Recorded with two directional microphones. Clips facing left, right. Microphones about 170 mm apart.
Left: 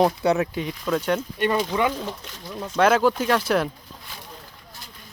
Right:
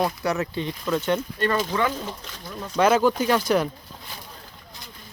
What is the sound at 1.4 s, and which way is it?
Speech, 15° left (ahead or behind).